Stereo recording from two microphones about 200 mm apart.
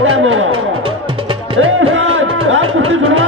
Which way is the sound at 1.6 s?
85° right.